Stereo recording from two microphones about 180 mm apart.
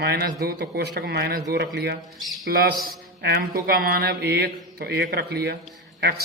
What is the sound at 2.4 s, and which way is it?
A man's voice, 55° right (ahead or behind).